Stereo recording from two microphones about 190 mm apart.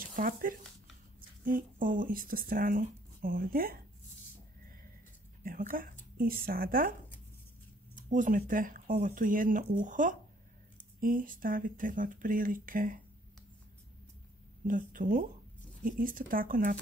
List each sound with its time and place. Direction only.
0.1 s speech: 45° right (ahead or behind)
5.4 s speech: 45° right (ahead or behind)
14.7 s speech: 45° right (ahead or behind)